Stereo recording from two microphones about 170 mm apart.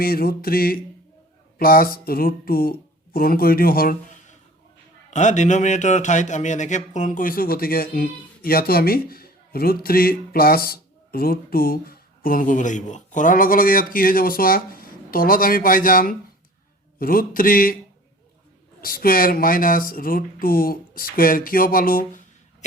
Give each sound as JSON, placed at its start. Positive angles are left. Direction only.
{"t": 0.0, "sound": "speech", "side_deg": 60}
{"t": 5.1, "sound": "a man's voice", "side_deg": 45}
{"t": 18.8, "sound": "speech", "side_deg": 60}